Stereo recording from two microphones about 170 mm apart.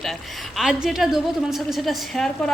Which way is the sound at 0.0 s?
Centre (ahead or behind).